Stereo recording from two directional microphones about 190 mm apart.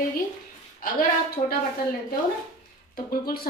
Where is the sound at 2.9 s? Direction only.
50° left (ahead or behind).